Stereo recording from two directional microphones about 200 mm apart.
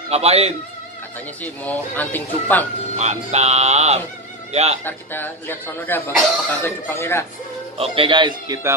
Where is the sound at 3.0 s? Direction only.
35° right (ahead or behind).